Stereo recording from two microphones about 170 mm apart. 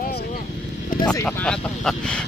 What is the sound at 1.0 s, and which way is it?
Vehicle, 20° left (ahead or behind).